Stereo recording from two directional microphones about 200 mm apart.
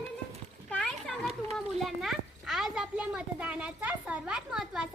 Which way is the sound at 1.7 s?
Centre (ahead or behind).